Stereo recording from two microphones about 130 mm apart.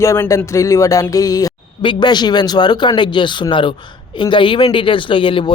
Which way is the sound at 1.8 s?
35° left (ahead or behind).